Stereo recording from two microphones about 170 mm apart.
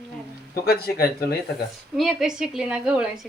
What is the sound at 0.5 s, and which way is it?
Speech, 65° left (ahead or behind).